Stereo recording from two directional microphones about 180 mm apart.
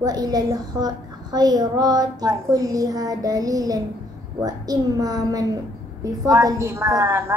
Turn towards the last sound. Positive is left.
turn(degrees=-15)  # may be behind; listen again after turning